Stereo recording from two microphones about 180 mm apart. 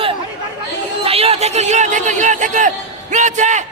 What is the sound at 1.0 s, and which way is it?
A man's voice, 35° right (ahead or behind).